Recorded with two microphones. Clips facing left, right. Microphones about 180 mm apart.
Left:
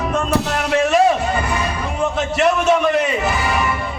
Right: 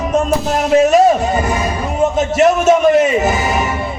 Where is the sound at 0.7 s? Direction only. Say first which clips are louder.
Right 6 dB; 40° right (ahead or behind).